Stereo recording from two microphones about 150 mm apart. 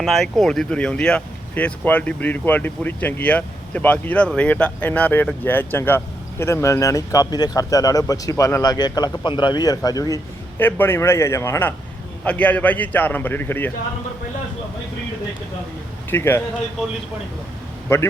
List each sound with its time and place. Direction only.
0.0 s speech: centre (ahead or behind)
16.0 s speech: 15° left (ahead or behind)
17.9 s speech: 15° left (ahead or behind)